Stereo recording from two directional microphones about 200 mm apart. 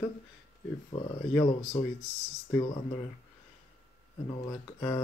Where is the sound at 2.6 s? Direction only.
20° left (ahead or behind).